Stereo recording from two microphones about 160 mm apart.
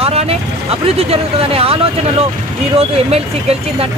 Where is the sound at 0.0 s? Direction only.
40° right (ahead or behind).